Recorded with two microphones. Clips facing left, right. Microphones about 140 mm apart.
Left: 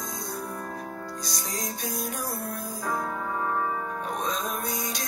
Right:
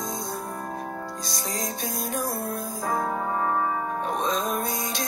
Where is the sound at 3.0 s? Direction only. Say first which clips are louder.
Right 4 dB; 35° right (ahead or behind).